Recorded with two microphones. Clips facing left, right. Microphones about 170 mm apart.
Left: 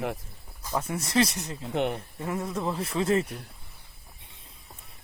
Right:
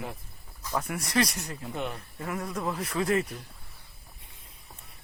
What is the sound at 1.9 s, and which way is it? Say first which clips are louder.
Speech: left 3 dB; 25° left (ahead or behind).